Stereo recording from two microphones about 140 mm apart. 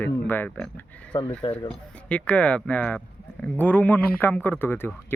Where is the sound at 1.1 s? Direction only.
30° left (ahead or behind).